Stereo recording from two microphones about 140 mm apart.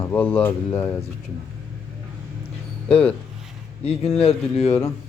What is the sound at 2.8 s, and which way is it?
Speech, 10° left (ahead or behind).